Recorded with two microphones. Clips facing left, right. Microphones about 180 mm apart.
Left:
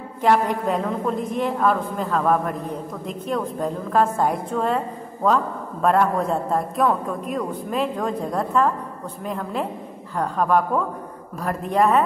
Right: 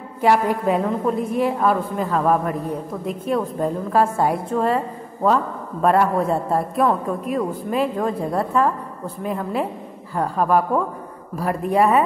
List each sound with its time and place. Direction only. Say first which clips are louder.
0.2 s a woman's voice: right 1 dB; 5° right (ahead or behind)